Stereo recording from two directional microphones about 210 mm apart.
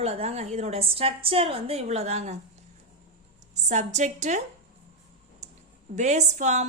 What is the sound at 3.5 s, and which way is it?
Speech, 35° right (ahead or behind).